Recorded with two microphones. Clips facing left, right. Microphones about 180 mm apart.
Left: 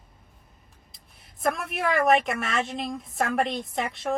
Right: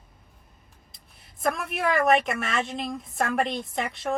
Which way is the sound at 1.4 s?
Centre (ahead or behind).